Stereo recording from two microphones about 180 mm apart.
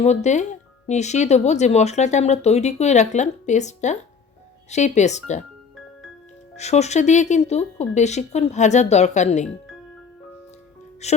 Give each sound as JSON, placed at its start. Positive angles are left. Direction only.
{"t": 0.0, "sound": "speech", "side_deg": 40}
{"t": 6.6, "sound": "speech", "side_deg": 40}
{"t": 11.0, "sound": "speech", "side_deg": 40}